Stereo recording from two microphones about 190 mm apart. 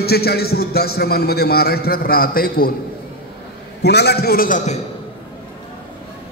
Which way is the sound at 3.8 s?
60° left (ahead or behind).